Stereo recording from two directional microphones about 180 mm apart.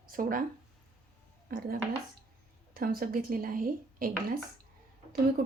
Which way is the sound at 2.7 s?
55° right (ahead or behind).